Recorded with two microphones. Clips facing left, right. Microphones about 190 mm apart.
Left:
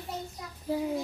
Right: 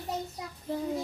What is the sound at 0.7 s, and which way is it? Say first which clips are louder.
Child singing: left 3 dB; 5° left (ahead or behind).